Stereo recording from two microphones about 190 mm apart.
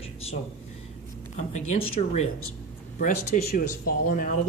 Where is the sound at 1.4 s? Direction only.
35° left (ahead or behind).